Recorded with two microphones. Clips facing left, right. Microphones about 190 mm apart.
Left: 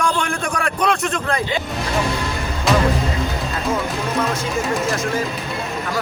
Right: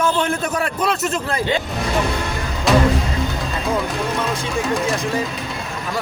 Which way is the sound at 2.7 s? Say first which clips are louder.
Right 2 dB; centre (ahead or behind).